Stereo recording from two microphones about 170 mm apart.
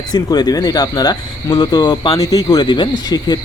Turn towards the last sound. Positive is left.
turn(degrees=25)  # may be behind; listen again after turning